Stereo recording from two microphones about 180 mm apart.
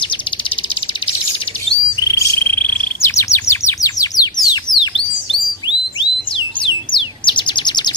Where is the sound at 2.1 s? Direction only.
15° left (ahead or behind).